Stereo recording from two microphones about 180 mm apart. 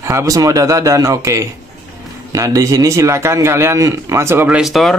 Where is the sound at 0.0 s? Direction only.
15° right (ahead or behind).